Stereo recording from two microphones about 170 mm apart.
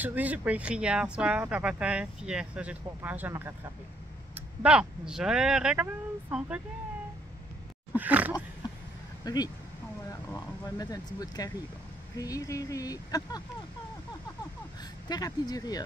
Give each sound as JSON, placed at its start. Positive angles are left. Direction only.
{"t": 0.0, "sound": "speech", "side_deg": -10}
{"t": 4.6, "sound": "speech", "side_deg": -5}
{"t": 7.9, "sound": "a sound", "side_deg": -10}
{"t": 9.2, "sound": "speech", "side_deg": 25}
{"t": 15.0, "sound": "speech", "side_deg": 25}